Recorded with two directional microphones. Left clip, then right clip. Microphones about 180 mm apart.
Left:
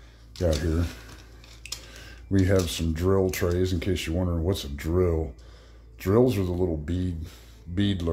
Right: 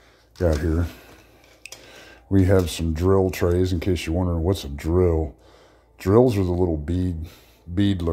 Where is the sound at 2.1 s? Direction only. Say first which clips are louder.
Right 5 dB; 20° right (ahead or behind).